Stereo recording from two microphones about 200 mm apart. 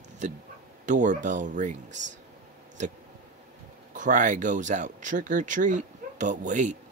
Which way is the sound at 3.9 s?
40° right (ahead or behind).